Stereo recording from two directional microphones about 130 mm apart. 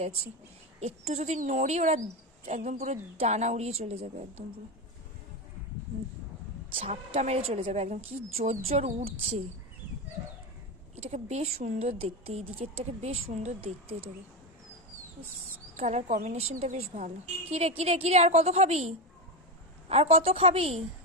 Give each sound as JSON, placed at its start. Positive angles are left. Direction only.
{"t": 0.8, "sound": "a woman's voice", "side_deg": -55}
{"t": 6.7, "sound": "a woman's voice", "side_deg": -45}
{"t": 10.9, "sound": "a woman's voice", "side_deg": -55}
{"t": 13.6, "sound": "speech", "side_deg": -45}
{"t": 15.7, "sound": "a woman's voice", "side_deg": -60}